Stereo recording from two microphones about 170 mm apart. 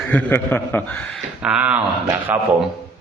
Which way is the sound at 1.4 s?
5° right (ahead or behind).